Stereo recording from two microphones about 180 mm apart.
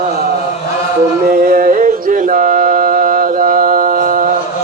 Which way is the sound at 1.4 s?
55° right (ahead or behind).